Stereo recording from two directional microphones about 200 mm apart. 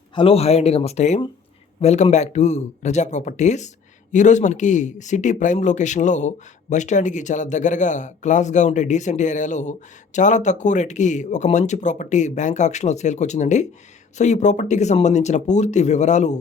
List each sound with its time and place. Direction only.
0.1 s speech: 25° left (ahead or behind)